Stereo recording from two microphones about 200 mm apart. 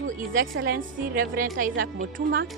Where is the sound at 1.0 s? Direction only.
45° right (ahead or behind).